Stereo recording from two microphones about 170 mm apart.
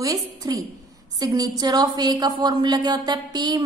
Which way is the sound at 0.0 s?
20° right (ahead or behind).